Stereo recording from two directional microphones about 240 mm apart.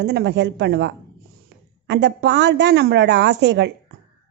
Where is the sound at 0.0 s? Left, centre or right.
Right.